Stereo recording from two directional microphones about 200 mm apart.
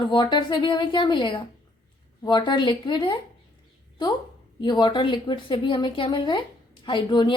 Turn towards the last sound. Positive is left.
turn(degrees=25)  # may be behind; listen again after turning